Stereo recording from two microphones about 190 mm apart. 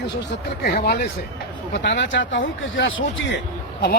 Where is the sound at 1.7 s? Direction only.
65° left (ahead or behind).